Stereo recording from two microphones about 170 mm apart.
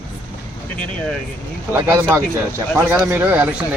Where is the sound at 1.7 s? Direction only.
15° right (ahead or behind).